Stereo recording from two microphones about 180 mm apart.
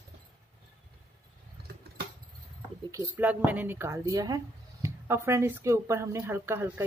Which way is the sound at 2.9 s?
20° right (ahead or behind).